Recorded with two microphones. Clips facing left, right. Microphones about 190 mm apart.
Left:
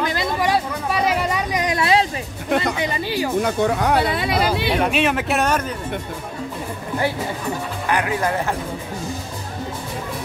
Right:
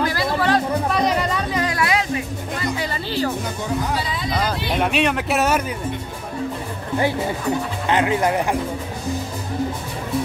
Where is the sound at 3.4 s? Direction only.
65° left (ahead or behind).